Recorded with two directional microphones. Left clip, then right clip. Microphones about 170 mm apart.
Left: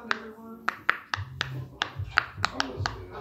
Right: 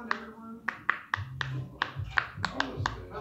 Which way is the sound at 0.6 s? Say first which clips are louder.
Left 4 dB; 45° left (ahead or behind).